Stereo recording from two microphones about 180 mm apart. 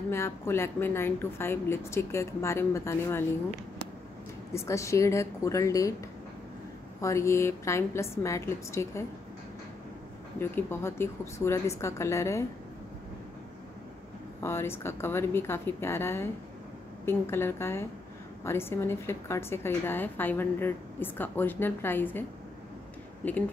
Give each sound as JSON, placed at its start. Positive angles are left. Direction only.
{"t": 0.1, "sound": "a woman's voice", "side_deg": 15}
{"t": 4.6, "sound": "a woman's voice", "side_deg": 15}
{"t": 7.0, "sound": "a woman's voice", "side_deg": 15}
{"t": 10.4, "sound": "a woman's voice", "side_deg": 15}
{"t": 14.4, "sound": "a woman's voice", "side_deg": 15}